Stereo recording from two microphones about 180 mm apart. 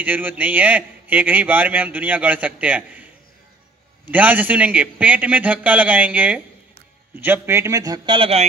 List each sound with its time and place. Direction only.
0.0 s a man's voice: 10° right (ahead or behind); by 8.5 s 30° right (ahead or behind)